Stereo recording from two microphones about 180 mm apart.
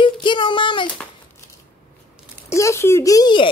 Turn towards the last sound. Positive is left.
turn(degrees=25)  # may be behind; listen again after turning